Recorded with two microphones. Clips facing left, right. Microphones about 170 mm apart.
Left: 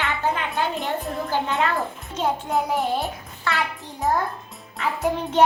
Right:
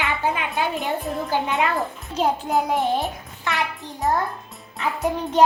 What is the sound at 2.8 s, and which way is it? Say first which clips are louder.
Speech: right 2 dB; 20° right (ahead or behind).